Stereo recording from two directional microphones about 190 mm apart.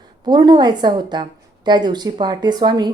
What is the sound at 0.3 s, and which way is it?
A woman's voice, 20° right (ahead or behind).